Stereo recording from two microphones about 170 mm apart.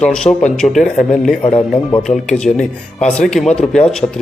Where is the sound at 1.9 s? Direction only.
5° left (ahead or behind).